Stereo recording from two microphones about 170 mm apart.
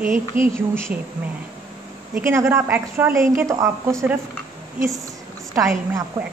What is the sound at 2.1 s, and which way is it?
Speech, 15° right (ahead or behind).